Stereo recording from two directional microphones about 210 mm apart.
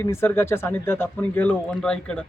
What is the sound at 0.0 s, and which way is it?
Speech, 10° left (ahead or behind).